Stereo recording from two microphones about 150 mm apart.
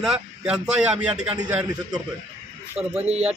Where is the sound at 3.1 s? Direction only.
45° right (ahead or behind).